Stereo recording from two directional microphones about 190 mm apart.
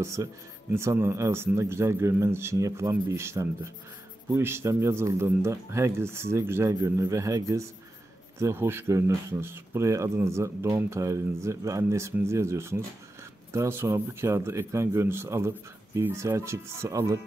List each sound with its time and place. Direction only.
0.0 s speech: 15° right (ahead or behind)